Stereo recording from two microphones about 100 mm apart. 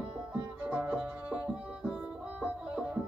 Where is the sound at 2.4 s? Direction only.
10° right (ahead or behind).